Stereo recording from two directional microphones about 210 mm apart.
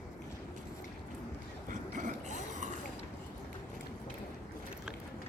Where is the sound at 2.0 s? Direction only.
35° right (ahead or behind).